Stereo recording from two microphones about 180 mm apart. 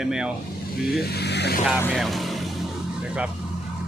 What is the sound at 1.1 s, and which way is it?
Speech, 65° left (ahead or behind).